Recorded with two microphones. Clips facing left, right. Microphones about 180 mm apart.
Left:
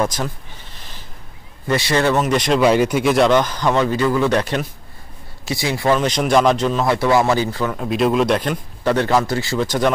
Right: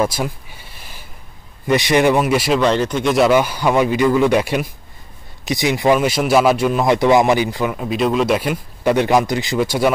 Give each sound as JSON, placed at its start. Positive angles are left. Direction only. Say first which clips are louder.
{"t": 0.0, "sound": "a sound", "louder": "right 2 dB", "side_deg": -10}
{"t": 1.7, "sound": "speech", "louder": "right 3 dB", "side_deg": -15}
{"t": 2.6, "sound": "speech", "louder": "left 2 dB", "side_deg": 10}
{"t": 7.7, "sound": "speech", "louder": "left 3 dB", "side_deg": 0}